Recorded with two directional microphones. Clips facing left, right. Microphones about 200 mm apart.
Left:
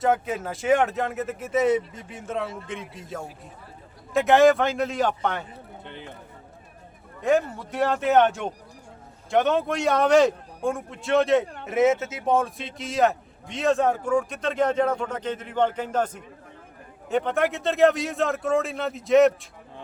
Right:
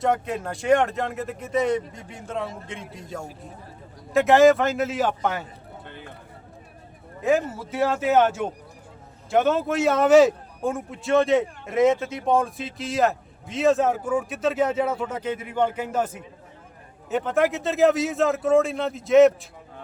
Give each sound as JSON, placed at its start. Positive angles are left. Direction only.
{"t": 0.0, "sound": "speech", "side_deg": 0}
{"t": 5.8, "sound": "a sound", "side_deg": 20}
{"t": 7.2, "sound": "speech", "side_deg": -5}